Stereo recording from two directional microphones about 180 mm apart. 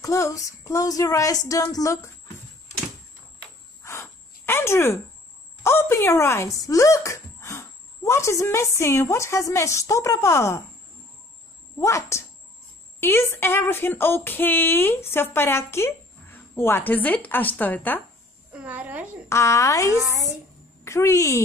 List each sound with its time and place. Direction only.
0.0 s speech: 20° left (ahead or behind)
3.8 s cricket: 15° left (ahead or behind)
5.6 s speech: 15° left (ahead or behind)
11.8 s speech: 15° left (ahead or behind)
18.5 s a sound: 5° right (ahead or behind)
19.2 s speech: 15° left (ahead or behind)
19.9 s a woman's voice: 15° right (ahead or behind)
20.8 s speech: 15° left (ahead or behind)